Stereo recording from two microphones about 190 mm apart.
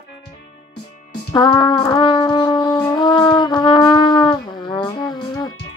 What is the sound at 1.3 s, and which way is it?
Brass instrument, 25° left (ahead or behind).